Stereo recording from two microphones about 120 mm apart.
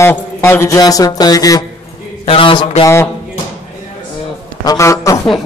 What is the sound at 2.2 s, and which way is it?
Speech, 50° left (ahead or behind).